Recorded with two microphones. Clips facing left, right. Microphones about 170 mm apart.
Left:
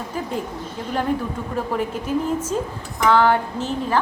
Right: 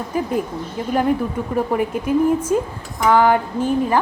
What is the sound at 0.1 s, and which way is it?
Speech, 10° right (ahead or behind).